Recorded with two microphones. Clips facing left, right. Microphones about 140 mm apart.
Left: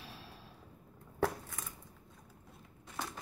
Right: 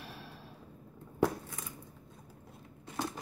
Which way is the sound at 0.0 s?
60° right (ahead or behind).